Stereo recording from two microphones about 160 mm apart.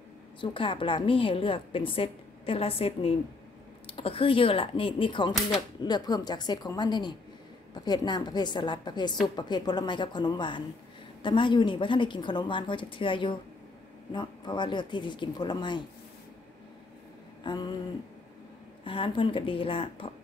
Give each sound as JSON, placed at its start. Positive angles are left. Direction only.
{"t": 0.4, "sound": "a woman's voice", "side_deg": 30}
{"t": 17.4, "sound": "a sound", "side_deg": 30}
{"t": 18.9, "sound": "a woman's voice", "side_deg": 35}